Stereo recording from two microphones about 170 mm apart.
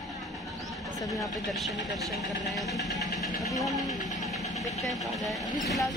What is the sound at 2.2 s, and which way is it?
Speech, 20° right (ahead or behind).